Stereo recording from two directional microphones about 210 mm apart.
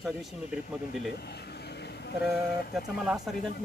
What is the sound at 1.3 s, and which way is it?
Vehicle, 50° left (ahead or behind).